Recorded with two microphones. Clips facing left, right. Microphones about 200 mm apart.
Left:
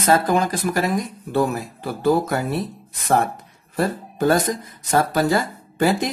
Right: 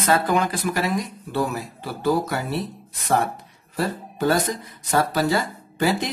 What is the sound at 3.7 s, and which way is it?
Speech, 50° left (ahead or behind).